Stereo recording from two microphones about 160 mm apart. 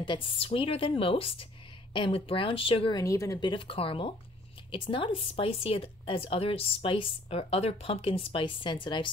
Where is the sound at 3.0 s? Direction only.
20° left (ahead or behind).